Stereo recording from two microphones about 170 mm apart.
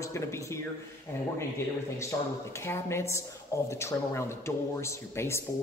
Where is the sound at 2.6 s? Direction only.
15° left (ahead or behind).